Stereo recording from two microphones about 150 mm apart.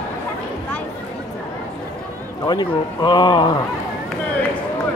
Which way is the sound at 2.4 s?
30° left (ahead or behind).